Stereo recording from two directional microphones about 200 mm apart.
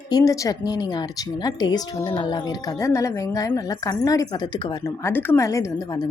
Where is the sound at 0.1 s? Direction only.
20° left (ahead or behind).